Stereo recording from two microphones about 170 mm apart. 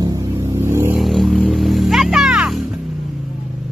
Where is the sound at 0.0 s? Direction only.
20° right (ahead or behind).